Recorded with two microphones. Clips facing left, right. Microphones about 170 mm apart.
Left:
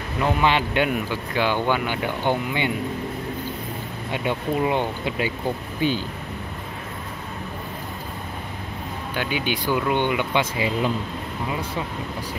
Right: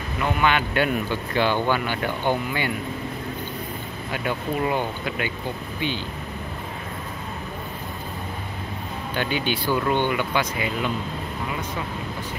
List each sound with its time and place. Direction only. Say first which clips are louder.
0.2 s speech: left 1 dB; 30° left (ahead or behind)
0.8 s speech: even; 10° left (ahead or behind)
4.1 s speech: left 2 dB; 25° left (ahead or behind)
9.1 s speech: right 1 dB; 10° left (ahead or behind); by 10.9 s 30° left (ahead or behind)